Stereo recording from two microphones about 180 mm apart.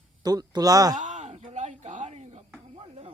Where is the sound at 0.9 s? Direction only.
45° right (ahead or behind).